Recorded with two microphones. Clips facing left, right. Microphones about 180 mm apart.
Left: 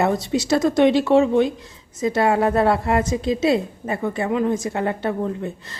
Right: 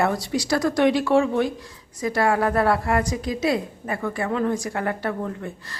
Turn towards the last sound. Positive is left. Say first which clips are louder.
# left 5 dB
turn(degrees=20)  # may be behind; listen again after turning